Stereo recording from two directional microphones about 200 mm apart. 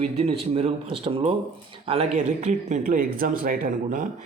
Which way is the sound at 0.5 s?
30° right (ahead or behind).